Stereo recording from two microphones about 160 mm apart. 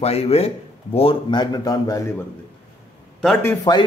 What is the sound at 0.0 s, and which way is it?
Speech, 40° left (ahead or behind).